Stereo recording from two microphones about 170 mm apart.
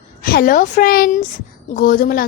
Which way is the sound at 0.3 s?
60° left (ahead or behind).